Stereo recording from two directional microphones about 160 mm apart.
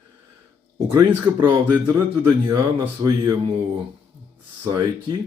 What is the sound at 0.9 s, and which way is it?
Speech, 15° right (ahead or behind).